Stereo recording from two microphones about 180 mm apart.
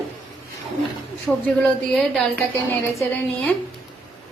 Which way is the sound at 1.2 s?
5° left (ahead or behind).